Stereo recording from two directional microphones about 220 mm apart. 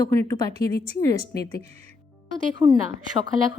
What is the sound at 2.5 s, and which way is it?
Speech, 20° right (ahead or behind).